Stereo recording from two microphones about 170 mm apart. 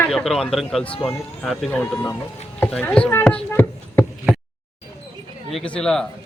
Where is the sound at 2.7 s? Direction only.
5° left (ahead or behind).